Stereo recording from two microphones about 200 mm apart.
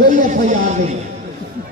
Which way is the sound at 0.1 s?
40° right (ahead or behind).